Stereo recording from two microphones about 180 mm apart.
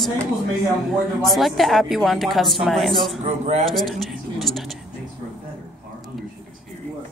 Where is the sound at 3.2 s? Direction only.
40° right (ahead or behind).